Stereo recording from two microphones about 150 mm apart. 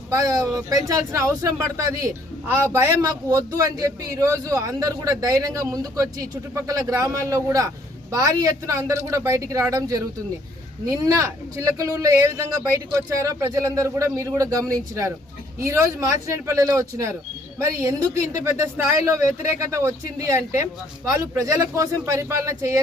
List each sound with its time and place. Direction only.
0.1 s a man's voice: 20° right (ahead or behind)